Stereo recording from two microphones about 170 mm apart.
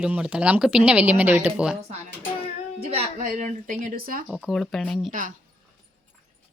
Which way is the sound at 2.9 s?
40° right (ahead or behind).